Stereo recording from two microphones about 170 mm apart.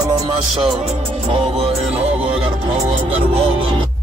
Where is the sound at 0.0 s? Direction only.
20° right (ahead or behind).